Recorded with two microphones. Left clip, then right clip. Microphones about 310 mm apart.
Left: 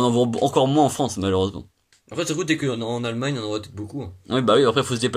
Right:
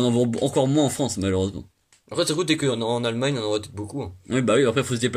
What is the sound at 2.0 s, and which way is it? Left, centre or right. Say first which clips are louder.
A man's voice: right 1 dB; centre.